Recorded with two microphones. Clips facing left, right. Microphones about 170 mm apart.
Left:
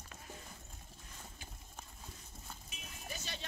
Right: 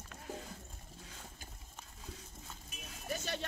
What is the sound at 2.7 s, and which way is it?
Music, 55° right (ahead or behind).